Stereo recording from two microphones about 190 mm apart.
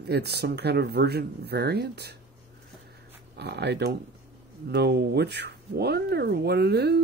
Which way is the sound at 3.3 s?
60° right (ahead or behind).